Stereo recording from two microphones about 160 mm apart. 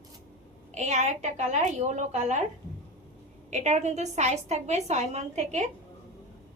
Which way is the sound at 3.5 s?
45° right (ahead or behind).